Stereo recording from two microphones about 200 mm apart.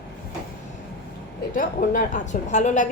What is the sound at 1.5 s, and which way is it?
A woman's voice, 40° left (ahead or behind).